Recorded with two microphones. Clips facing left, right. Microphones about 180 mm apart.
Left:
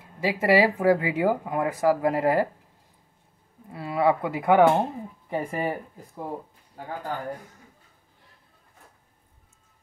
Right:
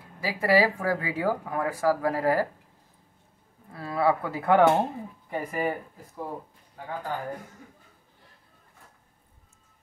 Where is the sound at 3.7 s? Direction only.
15° left (ahead or behind).